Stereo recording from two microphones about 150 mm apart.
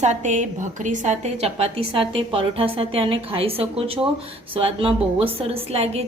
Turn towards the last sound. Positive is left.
turn(degrees=-40)  # may be behind; listen again after turning